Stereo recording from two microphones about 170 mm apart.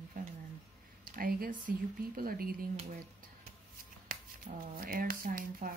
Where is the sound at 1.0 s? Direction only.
55° right (ahead or behind).